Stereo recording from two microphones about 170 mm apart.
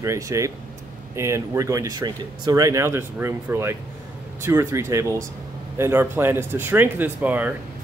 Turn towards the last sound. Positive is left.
turn(degrees=-10)  # may be behind; listen again after turning